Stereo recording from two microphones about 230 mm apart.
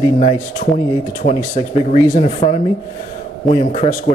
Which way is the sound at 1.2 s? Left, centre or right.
Left.